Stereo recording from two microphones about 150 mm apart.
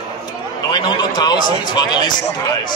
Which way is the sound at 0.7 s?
30° left (ahead or behind).